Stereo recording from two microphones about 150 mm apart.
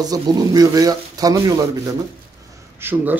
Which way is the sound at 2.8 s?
10° right (ahead or behind).